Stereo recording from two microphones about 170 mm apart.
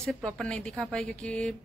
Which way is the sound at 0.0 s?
5° left (ahead or behind).